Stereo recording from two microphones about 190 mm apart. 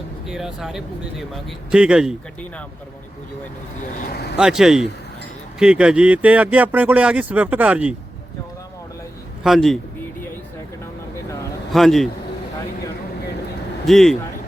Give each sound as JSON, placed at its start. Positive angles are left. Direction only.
{"t": 0.3, "sound": "speech", "side_deg": 0}
{"t": 3.9, "sound": "speech", "side_deg": 55}
{"t": 4.4, "sound": "speech", "side_deg": -5}
{"t": 9.4, "sound": "speech", "side_deg": 0}
{"t": 11.7, "sound": "speech", "side_deg": 0}
{"t": 13.8, "sound": "speech", "side_deg": 0}